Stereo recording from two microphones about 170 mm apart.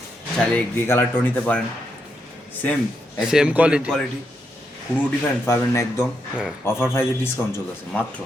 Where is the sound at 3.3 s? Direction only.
5° right (ahead or behind).